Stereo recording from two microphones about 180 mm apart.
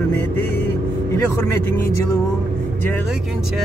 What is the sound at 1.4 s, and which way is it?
Music, 15° left (ahead or behind).